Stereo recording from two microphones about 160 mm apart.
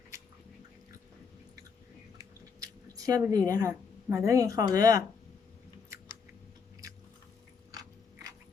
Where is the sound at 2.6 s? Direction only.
20° right (ahead or behind).